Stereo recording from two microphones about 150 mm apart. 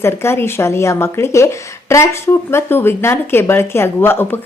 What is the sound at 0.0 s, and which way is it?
Speech, 15° left (ahead or behind).